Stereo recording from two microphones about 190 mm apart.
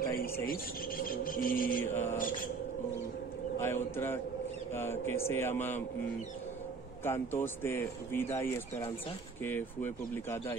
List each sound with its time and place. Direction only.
0.5 s speech: 50° left (ahead or behind)
1.9 s speech: 10° left (ahead or behind)
2.1 s speech: 45° left (ahead or behind)
3.5 s speech: 10° left (ahead or behind)
7.1 s speech: 10° left (ahead or behind)